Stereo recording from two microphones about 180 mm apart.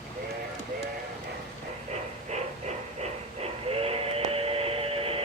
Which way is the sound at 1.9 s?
40° right (ahead or behind).